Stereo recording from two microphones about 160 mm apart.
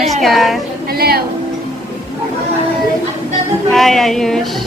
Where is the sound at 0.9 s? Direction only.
75° right (ahead or behind).